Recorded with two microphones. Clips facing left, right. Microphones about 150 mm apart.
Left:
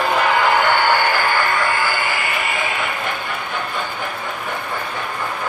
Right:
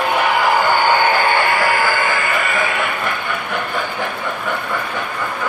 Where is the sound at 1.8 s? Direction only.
45° right (ahead or behind).